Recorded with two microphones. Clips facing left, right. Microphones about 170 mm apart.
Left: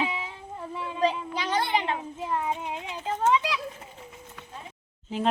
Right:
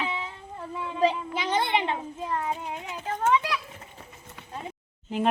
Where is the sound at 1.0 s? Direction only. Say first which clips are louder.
Right 2 dB; 20° right (ahead or behind).